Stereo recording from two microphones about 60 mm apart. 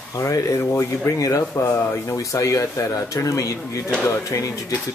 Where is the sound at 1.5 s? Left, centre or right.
Left.